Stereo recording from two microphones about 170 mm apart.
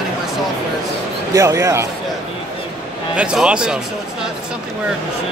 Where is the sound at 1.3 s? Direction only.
15° right (ahead or behind).